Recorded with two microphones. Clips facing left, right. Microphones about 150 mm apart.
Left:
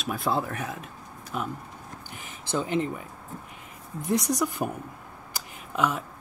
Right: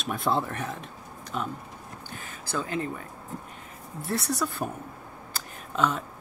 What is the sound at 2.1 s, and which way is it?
Speech, 20° left (ahead or behind).